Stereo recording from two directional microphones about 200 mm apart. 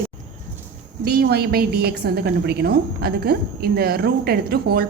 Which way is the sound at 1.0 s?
50° right (ahead or behind).